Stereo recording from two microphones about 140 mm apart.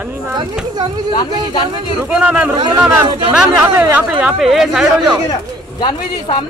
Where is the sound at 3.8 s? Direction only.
15° right (ahead or behind).